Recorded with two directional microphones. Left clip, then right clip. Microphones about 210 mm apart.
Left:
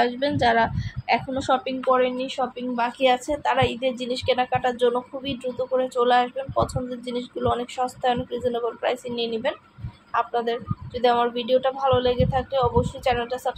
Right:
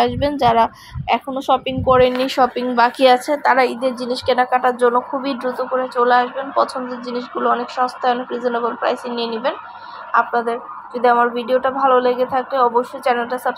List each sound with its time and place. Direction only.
0.0 s speech: 20° right (ahead or behind)
1.9 s a woman's voice: 30° right (ahead or behind)
4.6 s a woman's voice: 15° right (ahead or behind)